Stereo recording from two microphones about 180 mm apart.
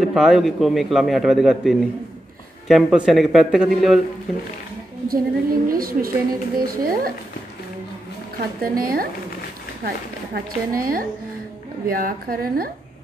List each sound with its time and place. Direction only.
0.0 s a man's voice: centre (ahead or behind)
5.0 s a woman's voice: 55° right (ahead or behind)
8.6 s a woman's voice: 55° right (ahead or behind)
10.3 s a woman's voice: 55° right (ahead or behind)